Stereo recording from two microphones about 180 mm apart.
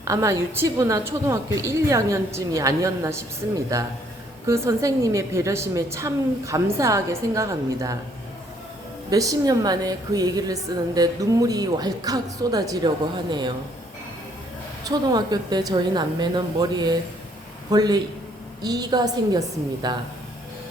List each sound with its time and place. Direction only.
0.0 s a woman's voice: 15° right (ahead or behind)
9.0 s a woman's voice: 20° right (ahead or behind)
14.8 s a woman's voice: 20° right (ahead or behind)